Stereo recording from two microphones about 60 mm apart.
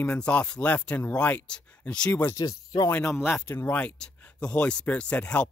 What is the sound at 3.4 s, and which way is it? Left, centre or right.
Speech, left.